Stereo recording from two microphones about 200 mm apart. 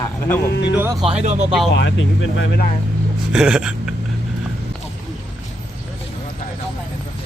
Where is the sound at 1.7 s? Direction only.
65° left (ahead or behind).